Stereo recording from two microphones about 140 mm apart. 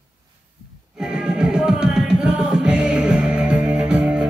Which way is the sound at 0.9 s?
5° right (ahead or behind).